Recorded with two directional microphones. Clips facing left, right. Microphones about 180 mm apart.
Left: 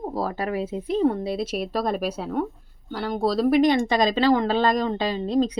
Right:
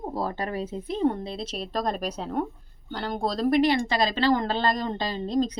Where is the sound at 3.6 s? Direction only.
20° left (ahead or behind).